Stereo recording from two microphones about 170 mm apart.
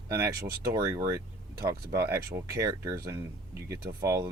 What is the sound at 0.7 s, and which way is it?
Speech, 20° right (ahead or behind).